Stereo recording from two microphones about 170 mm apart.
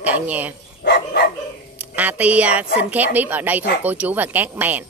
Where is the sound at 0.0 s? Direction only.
10° right (ahead or behind).